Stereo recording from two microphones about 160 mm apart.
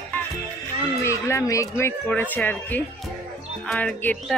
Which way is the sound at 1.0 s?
20° left (ahead or behind).